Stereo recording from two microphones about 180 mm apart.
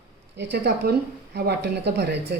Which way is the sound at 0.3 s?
60° right (ahead or behind).